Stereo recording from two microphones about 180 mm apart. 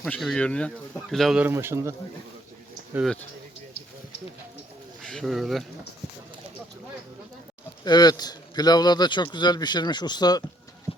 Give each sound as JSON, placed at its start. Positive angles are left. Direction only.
{"t": 0.0, "sound": "speech", "side_deg": 0}
{"t": 2.9, "sound": "speech", "side_deg": 0}
{"t": 5.0, "sound": "speech", "side_deg": 0}
{"t": 7.9, "sound": "a man's voice", "side_deg": 20}